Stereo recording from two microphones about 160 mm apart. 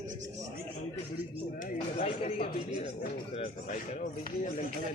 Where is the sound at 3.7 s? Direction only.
50° left (ahead or behind).